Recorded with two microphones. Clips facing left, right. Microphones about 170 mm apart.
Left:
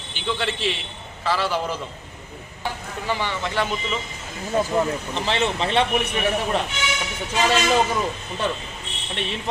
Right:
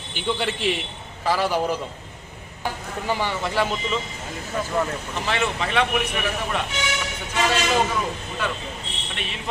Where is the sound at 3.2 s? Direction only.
10° right (ahead or behind).